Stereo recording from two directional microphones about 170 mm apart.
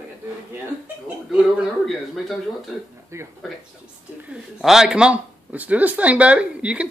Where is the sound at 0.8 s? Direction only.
5° right (ahead or behind).